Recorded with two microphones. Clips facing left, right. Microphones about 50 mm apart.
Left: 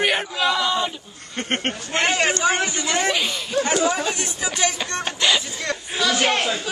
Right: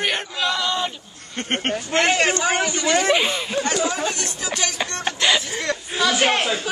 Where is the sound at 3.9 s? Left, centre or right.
Centre.